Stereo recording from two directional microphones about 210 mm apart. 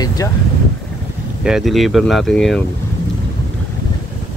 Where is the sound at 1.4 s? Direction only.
Centre (ahead or behind).